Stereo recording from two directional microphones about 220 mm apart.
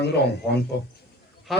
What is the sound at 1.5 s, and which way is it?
Honk, centre (ahead or behind).